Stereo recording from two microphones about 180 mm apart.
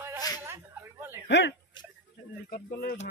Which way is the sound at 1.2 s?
80° left.